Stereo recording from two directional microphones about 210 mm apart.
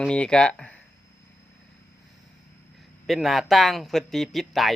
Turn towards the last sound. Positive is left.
turn(degrees=0)  # may be behind; listen again after turning